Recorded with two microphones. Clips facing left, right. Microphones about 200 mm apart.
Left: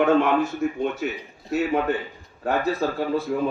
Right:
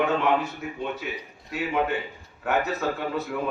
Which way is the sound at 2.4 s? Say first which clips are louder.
Left 2 dB; 35° left (ahead or behind).